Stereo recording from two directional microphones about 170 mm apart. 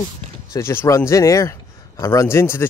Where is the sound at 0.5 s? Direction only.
15° left (ahead or behind).